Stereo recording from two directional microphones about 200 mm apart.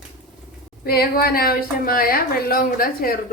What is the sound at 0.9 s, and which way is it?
A woman's voice, 50° left (ahead or behind).